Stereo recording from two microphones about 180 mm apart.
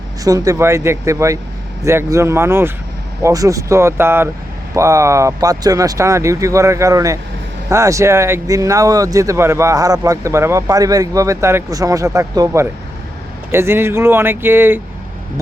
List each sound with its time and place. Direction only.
0.3 s a man's voice: 20° right (ahead or behind)